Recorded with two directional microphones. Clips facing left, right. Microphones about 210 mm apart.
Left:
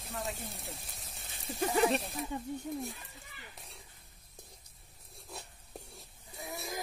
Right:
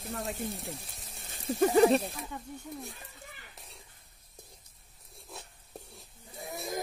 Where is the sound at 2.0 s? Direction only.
Centre (ahead or behind).